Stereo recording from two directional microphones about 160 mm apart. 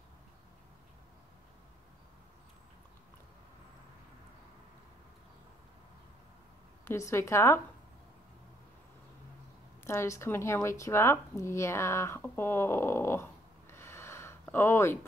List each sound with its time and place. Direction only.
6.8 s a woman's voice: 15° left (ahead or behind)
9.8 s speech: 15° left (ahead or behind)